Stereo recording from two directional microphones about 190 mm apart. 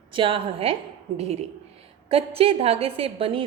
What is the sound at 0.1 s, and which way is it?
A woman's voice, 25° right (ahead or behind).